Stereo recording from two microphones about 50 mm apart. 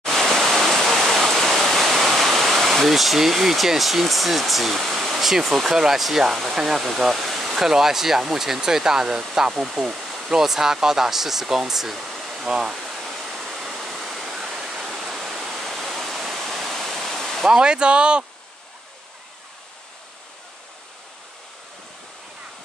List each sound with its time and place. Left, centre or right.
0.0 s waterfall: centre
17.5 s speech: centre